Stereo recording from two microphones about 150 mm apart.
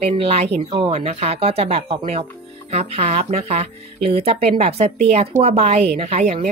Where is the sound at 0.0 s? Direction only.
45° right (ahead or behind).